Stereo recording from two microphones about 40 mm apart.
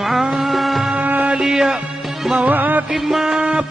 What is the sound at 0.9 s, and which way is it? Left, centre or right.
Music, right.